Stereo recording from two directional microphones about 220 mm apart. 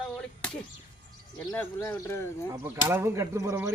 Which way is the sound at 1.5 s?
10° left (ahead or behind).